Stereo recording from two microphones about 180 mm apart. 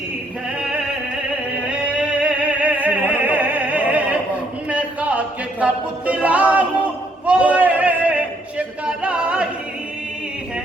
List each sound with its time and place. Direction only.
1.6 s opera: 5° right (ahead or behind)
4.7 s a capella: 10° right (ahead or behind)
7.3 s a sound: 5° right (ahead or behind)